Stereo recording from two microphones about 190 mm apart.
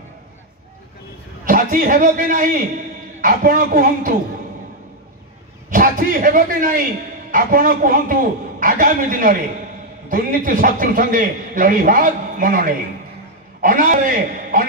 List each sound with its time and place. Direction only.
1.4 s a man's voice: 45° right (ahead or behind)
5.7 s a man's voice: 45° right (ahead or behind)